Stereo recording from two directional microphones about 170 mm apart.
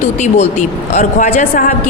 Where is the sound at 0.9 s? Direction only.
40° left (ahead or behind).